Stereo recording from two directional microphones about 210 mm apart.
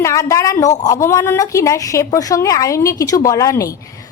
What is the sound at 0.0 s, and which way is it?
A woman's voice, 15° left (ahead or behind).